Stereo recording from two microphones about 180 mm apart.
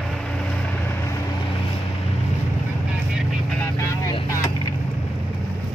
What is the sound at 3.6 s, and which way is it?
Vehicle, 15° left (ahead or behind).